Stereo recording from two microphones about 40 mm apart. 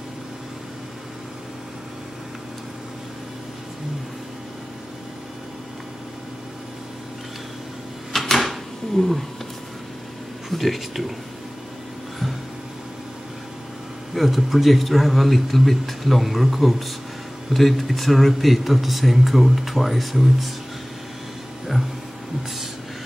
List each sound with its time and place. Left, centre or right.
8.4 s a sound: centre
10.5 s speech: centre
14.1 s speech: centre